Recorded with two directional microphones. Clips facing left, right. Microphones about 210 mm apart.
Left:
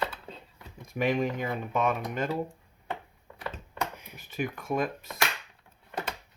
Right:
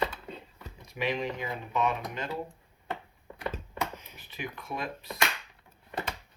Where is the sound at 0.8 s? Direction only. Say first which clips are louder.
Left 4 dB; 50° left (ahead or behind).